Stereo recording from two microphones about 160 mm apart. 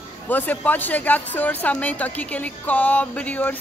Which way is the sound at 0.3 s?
10° left (ahead or behind).